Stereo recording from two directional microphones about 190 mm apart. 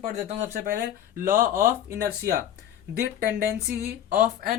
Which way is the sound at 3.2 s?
55° right (ahead or behind).